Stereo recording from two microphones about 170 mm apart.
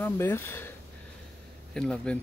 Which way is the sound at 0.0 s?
15° left (ahead or behind).